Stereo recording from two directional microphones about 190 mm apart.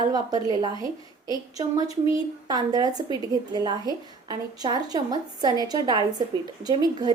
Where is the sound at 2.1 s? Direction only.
20° right (ahead or behind).